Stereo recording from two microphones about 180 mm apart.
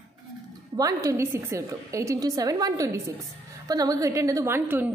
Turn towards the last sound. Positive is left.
turn(degrees=-10)  # may be behind; listen again after turning